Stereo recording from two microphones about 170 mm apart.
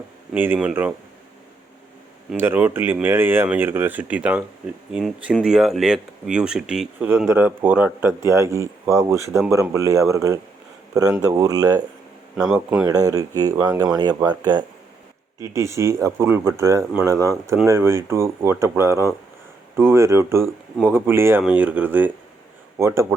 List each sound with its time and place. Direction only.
0.3 s speech: 10° right (ahead or behind)
2.3 s speech: 15° right (ahead or behind)
12.5 s speech: 5° right (ahead or behind)
12.8 s speech: 20° right (ahead or behind)